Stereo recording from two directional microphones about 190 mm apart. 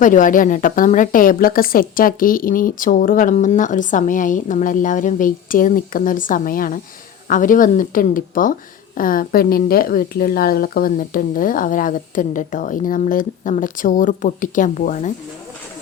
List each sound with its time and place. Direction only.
0.0 s a woman's voice: 45° left (ahead or behind)